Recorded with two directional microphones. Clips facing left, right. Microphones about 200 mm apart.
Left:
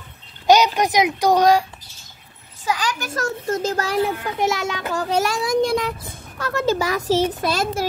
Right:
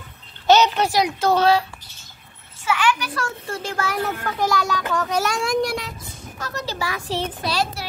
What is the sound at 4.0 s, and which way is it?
A child's voice, 20° left (ahead or behind).